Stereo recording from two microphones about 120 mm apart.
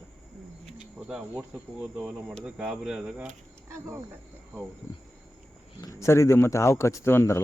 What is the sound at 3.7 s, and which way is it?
Speech, 20° right (ahead or behind).